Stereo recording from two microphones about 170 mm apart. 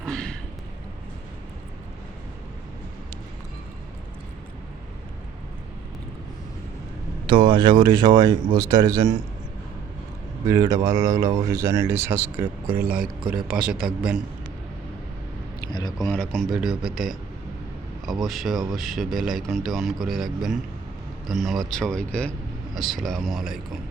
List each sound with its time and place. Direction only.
0.0 s a sound: 5° left (ahead or behind)
7.3 s speech: 30° right (ahead or behind)
10.5 s speech: 20° right (ahead or behind)
12.7 s speech: 60° right (ahead or behind)
13.8 s speech: 5° right (ahead or behind)
16.1 s speech: 5° left (ahead or behind)